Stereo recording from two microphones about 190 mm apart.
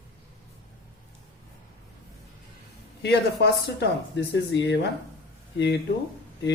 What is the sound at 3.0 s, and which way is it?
A man's voice, 65° left (ahead or behind).